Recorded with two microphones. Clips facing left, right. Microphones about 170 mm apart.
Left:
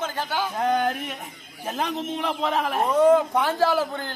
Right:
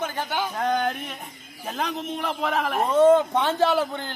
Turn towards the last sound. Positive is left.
turn(degrees=-20)  # may be behind; listen again after turning